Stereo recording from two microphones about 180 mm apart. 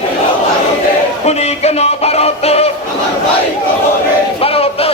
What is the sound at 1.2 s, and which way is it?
Music, 35° left (ahead or behind).